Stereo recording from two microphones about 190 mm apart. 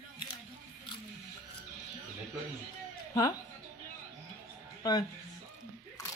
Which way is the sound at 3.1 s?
15° left (ahead or behind).